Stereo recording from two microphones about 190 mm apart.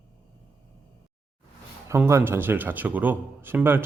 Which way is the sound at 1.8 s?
15° right (ahead or behind).